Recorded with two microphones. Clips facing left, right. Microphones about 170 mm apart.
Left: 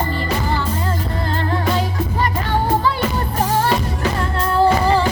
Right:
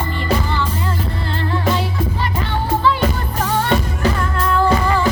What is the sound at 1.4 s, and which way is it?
Music, 40° left (ahead or behind).